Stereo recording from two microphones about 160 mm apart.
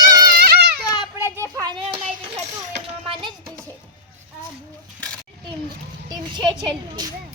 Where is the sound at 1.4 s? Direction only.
25° right (ahead or behind).